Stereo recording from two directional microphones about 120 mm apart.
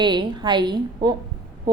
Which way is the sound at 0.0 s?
40° right (ahead or behind).